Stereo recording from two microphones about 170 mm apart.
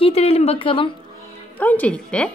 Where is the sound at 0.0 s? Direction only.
35° left (ahead or behind).